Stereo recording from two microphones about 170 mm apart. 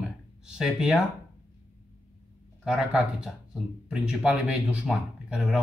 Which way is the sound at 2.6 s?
5° right (ahead or behind).